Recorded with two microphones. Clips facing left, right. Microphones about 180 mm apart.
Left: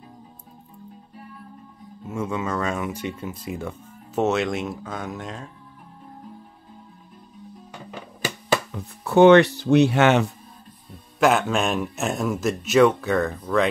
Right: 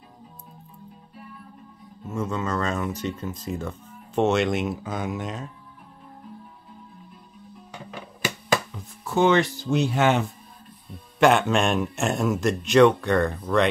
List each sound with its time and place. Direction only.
2.0 s speech: 10° left (ahead or behind)
8.7 s speech: 65° left (ahead or behind)
11.1 s speech: centre (ahead or behind)